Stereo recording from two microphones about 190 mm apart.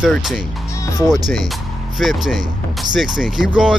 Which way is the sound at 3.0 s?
45° right (ahead or behind).